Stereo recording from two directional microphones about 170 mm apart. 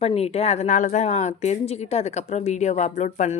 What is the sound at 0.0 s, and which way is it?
A woman's voice, 35° left (ahead or behind).